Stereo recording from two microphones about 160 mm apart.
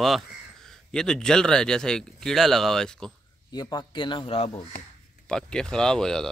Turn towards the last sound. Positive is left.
turn(degrees=5)  # may be behind; listen again after turning